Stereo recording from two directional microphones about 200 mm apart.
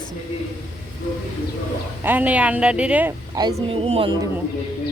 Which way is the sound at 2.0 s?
10° right (ahead or behind).